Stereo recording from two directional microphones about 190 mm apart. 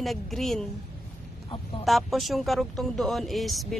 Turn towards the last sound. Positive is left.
turn(degrees=0)  # may be behind; listen again after turning